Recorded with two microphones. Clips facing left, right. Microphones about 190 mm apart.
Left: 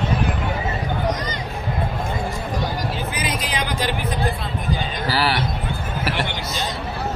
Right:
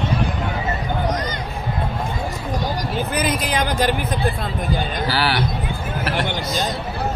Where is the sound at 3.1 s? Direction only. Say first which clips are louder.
Right 4 dB; 50° right (ahead or behind).